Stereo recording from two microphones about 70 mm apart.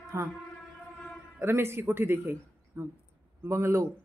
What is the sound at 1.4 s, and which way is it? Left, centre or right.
Speech, right.